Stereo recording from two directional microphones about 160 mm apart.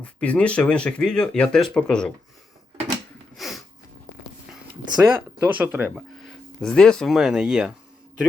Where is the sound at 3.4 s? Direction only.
Centre (ahead or behind).